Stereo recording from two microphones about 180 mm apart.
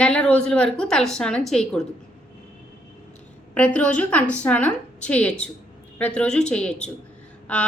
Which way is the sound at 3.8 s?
5° left (ahead or behind).